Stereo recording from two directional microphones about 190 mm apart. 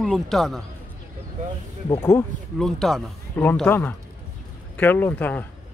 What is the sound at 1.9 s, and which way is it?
Speech, 15° left (ahead or behind).